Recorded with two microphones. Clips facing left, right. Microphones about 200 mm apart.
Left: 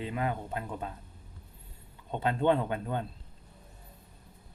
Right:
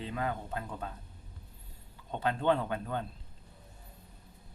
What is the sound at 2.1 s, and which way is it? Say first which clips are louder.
Speech: left 2 dB; 20° left (ahead or behind).